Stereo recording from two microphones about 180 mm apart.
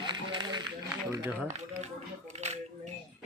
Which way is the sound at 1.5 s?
40° right (ahead or behind).